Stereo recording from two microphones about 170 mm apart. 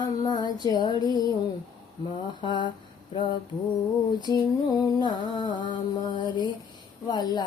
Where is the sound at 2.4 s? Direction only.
25° left (ahead or behind).